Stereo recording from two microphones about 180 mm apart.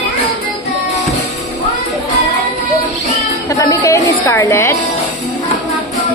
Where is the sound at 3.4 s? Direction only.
20° left (ahead or behind).